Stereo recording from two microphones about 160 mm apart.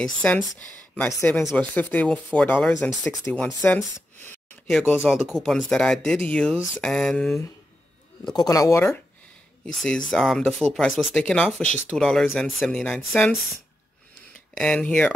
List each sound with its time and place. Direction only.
0.0 s speech: 5° left (ahead or behind)
4.6 s speech: centre (ahead or behind)
8.3 s speech: 25° left (ahead or behind)
9.7 s speech: 5° left (ahead or behind)
14.6 s speech: 5° left (ahead or behind)